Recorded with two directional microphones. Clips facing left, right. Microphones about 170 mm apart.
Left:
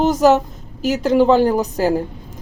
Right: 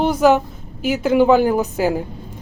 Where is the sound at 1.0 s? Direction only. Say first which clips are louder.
Even; 5° right (ahead or behind).